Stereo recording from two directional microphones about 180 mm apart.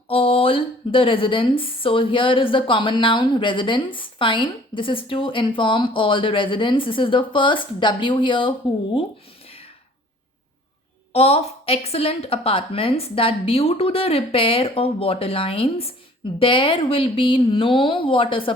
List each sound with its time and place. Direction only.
0.1 s speech: 30° left (ahead or behind)
11.1 s a woman's voice: 35° left (ahead or behind)